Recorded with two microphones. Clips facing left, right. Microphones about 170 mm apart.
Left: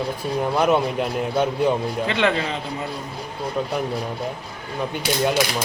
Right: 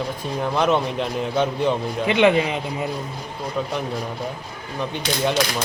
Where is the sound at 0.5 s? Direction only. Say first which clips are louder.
Left 1 dB; 10° left (ahead or behind).